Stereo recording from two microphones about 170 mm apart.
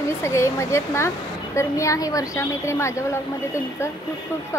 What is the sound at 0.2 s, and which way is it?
Speech, 15° left (ahead or behind).